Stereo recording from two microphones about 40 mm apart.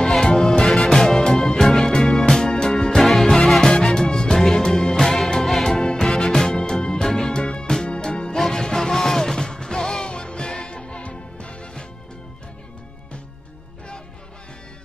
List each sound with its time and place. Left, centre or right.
0.0 s music: centre
3.0 s music: centre; by 11.8 s left